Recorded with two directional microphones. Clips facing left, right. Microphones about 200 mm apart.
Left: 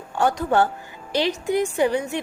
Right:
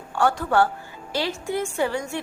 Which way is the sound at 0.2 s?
20° left (ahead or behind).